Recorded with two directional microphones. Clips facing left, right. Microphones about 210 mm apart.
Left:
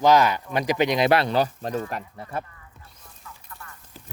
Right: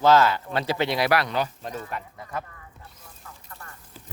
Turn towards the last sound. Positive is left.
turn(degrees=-40)  # may be behind; listen again after turning